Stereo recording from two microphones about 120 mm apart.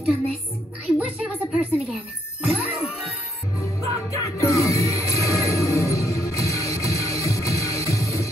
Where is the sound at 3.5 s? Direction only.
25° left (ahead or behind).